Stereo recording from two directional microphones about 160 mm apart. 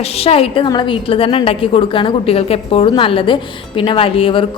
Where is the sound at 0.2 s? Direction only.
35° left (ahead or behind).